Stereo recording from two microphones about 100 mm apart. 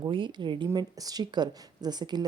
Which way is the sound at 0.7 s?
40° right (ahead or behind).